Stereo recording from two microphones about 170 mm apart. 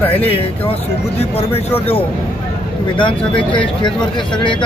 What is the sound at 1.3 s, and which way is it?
Speech, 35° left (ahead or behind).